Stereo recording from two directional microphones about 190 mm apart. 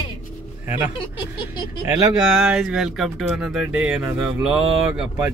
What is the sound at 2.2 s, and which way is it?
Speech, 5° right (ahead or behind).